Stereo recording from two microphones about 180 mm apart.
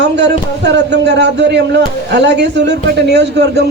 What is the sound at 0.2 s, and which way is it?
Speech, 70° right (ahead or behind).